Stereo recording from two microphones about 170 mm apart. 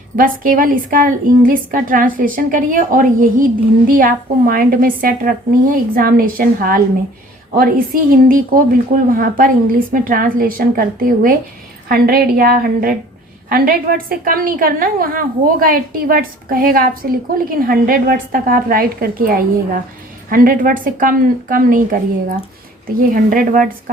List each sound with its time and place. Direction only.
0.2 s a woman's voice: 55° right (ahead or behind)
8.3 s a woman's voice: 55° right (ahead or behind)
23.1 s a woman's voice: 55° right (ahead or behind)